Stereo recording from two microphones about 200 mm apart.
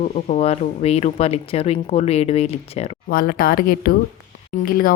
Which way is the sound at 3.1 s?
45° left (ahead or behind).